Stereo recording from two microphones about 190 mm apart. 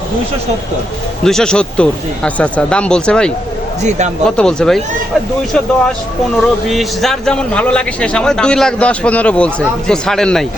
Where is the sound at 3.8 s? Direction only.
40° right (ahead or behind).